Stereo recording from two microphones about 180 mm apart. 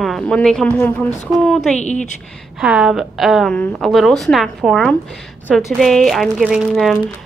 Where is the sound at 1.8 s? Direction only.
40° left (ahead or behind).